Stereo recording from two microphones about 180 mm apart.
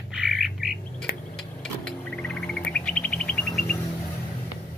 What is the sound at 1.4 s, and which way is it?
Bird, 5° left (ahead or behind).